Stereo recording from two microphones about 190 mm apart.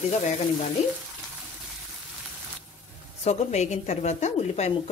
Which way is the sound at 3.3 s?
35° left (ahead or behind).